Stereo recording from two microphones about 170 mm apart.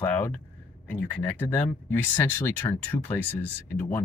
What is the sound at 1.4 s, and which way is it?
Speech, 10° left (ahead or behind).